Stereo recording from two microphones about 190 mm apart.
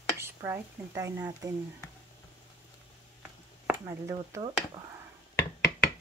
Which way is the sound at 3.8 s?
15° right (ahead or behind).